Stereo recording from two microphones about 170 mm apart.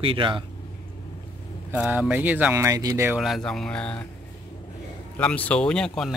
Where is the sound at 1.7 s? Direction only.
10° right (ahead or behind).